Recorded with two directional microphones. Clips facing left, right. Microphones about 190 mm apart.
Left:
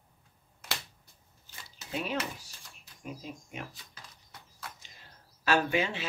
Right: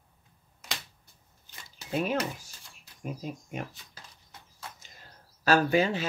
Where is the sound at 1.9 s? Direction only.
50° right (ahead or behind).